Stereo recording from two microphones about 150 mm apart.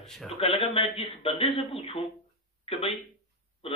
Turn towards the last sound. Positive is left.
turn(degrees=40)  # may be behind; listen again after turning